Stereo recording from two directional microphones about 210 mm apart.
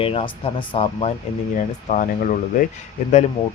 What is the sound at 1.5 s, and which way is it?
Speech, 40° left (ahead or behind).